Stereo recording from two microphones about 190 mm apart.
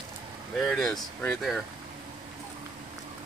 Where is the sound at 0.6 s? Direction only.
Centre (ahead or behind).